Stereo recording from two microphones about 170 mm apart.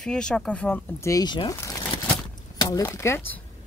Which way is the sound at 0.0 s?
5° left (ahead or behind).